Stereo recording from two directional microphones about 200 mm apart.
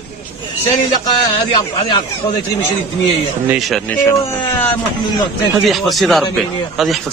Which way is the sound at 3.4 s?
Centre (ahead or behind).